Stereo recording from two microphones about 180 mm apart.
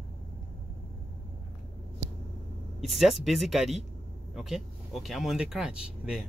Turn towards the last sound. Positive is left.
turn(degrees=-5)  # may be behind; listen again after turning